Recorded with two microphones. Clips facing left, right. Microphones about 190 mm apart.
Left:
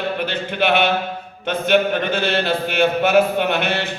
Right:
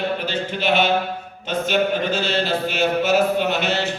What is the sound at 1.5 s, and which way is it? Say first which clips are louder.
A man's voice: left 3 dB; 60° left (ahead or behind).